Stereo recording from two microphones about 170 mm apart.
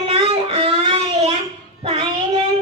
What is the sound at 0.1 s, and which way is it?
Music, 35° right (ahead or behind).